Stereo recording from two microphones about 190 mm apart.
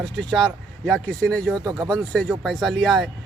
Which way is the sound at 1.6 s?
20° right (ahead or behind).